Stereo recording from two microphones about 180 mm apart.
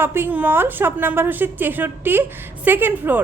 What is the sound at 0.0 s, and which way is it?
A woman's voice, 10° right (ahead or behind).